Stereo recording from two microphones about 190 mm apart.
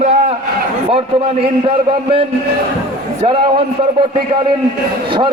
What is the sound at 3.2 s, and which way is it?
Speech, 25° right (ahead or behind).